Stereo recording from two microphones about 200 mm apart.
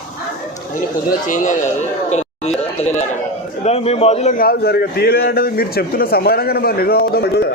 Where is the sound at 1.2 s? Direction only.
40° left (ahead or behind).